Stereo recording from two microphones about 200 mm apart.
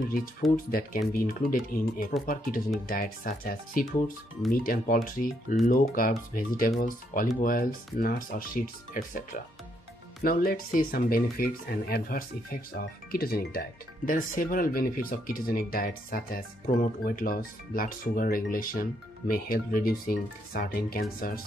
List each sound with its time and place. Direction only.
0.7 s speech: 45° left (ahead or behind)